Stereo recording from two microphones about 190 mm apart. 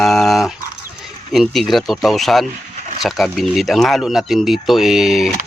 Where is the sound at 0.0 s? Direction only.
Centre (ahead or behind).